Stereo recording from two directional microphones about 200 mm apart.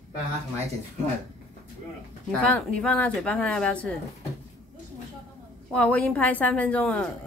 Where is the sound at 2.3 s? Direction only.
5° left (ahead or behind).